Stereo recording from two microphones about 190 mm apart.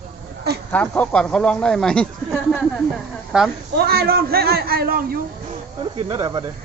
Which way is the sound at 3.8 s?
55° right (ahead or behind).